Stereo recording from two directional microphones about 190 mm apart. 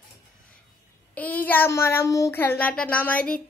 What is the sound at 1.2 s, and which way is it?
A child's voice, 10° left (ahead or behind).